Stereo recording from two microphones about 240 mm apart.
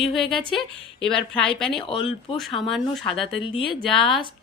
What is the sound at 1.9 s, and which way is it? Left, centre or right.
Speech, left.